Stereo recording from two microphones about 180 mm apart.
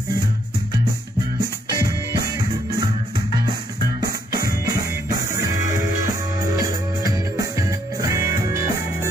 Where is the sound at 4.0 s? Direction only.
20° right (ahead or behind).